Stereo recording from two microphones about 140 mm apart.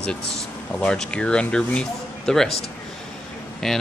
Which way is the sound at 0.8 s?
5° left (ahead or behind).